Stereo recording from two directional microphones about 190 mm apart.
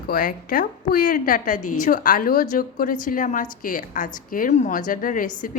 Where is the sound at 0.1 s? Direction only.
50° left (ahead or behind).